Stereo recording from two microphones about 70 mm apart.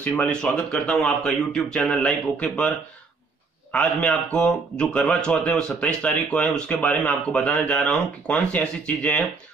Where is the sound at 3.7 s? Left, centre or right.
Centre.